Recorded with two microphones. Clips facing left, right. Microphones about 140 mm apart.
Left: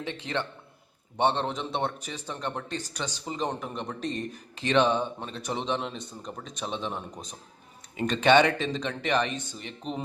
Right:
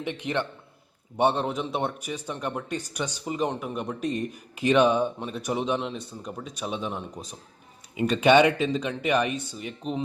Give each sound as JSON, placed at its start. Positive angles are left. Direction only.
{"t": 0.0, "sound": "speech", "side_deg": -15}